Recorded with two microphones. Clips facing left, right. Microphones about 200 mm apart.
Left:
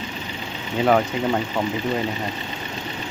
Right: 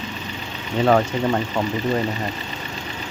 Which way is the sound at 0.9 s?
Centre (ahead or behind).